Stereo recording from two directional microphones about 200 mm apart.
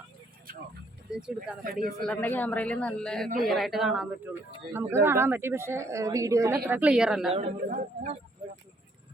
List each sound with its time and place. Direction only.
1.1 s a man's voice: centre (ahead or behind)
1.6 s speech: 45° right (ahead or behind)
2.0 s a man's voice: 5° left (ahead or behind)
7.4 s a man's voice: 40° right (ahead or behind)